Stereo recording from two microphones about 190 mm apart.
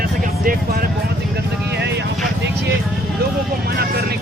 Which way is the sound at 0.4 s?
50° right (ahead or behind).